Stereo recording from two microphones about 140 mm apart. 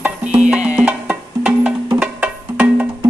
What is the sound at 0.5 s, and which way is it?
Music, 10° right (ahead or behind).